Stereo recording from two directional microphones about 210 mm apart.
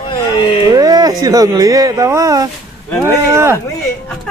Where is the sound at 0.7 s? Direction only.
15° right (ahead or behind).